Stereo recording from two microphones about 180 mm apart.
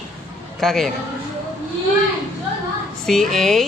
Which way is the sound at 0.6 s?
Centre (ahead or behind).